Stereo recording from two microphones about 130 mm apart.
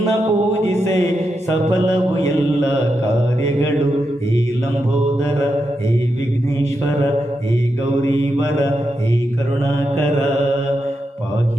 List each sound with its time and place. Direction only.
0.5 s music: 60° right (ahead or behind)